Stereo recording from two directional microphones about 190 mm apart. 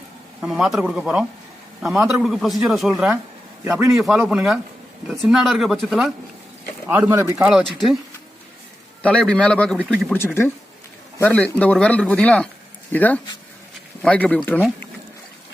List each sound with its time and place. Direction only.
0.4 s a man's voice: centre (ahead or behind)
6.8 s speech: 10° right (ahead or behind)
9.0 s speech: 5° left (ahead or behind)